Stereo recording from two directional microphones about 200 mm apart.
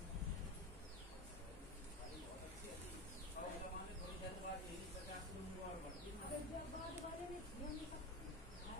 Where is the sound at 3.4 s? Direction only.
45° left (ahead or behind).